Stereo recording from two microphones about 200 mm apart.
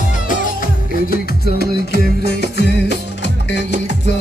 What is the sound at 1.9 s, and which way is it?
Music, 55° left (ahead or behind).